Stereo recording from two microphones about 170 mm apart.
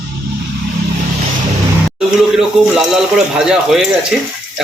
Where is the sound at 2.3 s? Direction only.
5° right (ahead or behind).